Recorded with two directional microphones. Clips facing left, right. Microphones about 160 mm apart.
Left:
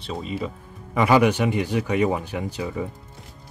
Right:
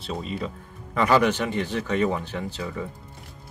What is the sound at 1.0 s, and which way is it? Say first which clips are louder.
Speech: left 2 dB; 15° left (ahead or behind).